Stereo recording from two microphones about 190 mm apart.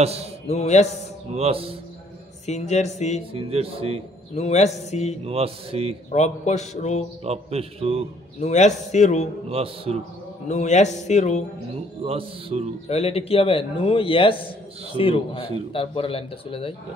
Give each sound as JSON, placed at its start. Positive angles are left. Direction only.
{"t": 0.0, "sound": "mantra", "side_deg": -35}
{"t": 0.5, "sound": "speech", "side_deg": 35}
{"t": 1.3, "sound": "mantra", "side_deg": -30}
{"t": 2.4, "sound": "speech", "side_deg": 35}
{"t": 3.3, "sound": "mantra", "side_deg": -30}
{"t": 4.4, "sound": "speech", "side_deg": 35}
{"t": 5.2, "sound": "mantra", "side_deg": -30}
{"t": 6.1, "sound": "speech", "side_deg": 35}
{"t": 7.2, "sound": "mantra", "side_deg": -30}
{"t": 8.4, "sound": "speech", "side_deg": 35}
{"t": 9.5, "sound": "mantra", "side_deg": -30}
{"t": 10.5, "sound": "speech", "side_deg": 40}
{"t": 12.0, "sound": "speech", "side_deg": -30}
{"t": 12.8, "sound": "speech", "side_deg": 30}